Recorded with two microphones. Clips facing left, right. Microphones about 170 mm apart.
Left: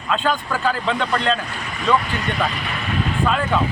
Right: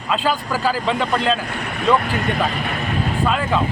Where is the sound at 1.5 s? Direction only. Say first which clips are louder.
Right 4 dB; 60° right (ahead or behind).